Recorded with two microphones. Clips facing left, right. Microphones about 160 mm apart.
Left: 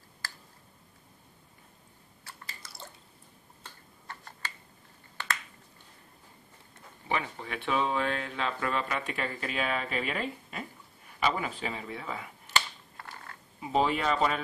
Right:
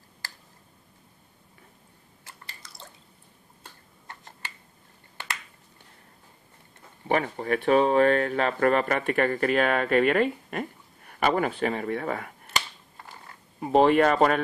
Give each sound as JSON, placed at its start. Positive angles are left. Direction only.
{"t": 2.6, "sound": "drip", "side_deg": 5}
{"t": 4.1, "sound": "finger snapping", "side_deg": -20}
{"t": 7.1, "sound": "speech", "side_deg": -50}
{"t": 12.9, "sound": "mechanisms", "side_deg": -15}
{"t": 13.6, "sound": "speech", "side_deg": -55}